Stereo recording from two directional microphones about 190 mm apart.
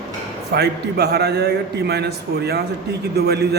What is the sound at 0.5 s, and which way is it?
A man's voice, 60° right (ahead or behind).